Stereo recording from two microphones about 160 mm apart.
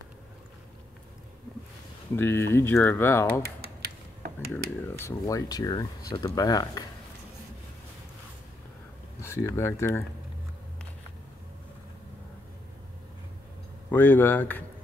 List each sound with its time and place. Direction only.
2.1 s speech: 15° left (ahead or behind)
3.4 s a sound: 75° right (ahead or behind)
4.5 s speech: 15° left (ahead or behind)
9.2 s speech: 15° left (ahead or behind)
13.8 s speech: 10° left (ahead or behind)